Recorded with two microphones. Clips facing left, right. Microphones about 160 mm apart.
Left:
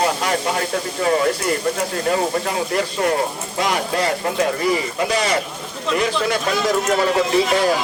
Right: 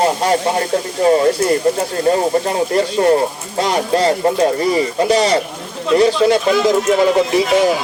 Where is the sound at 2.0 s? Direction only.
30° right (ahead or behind).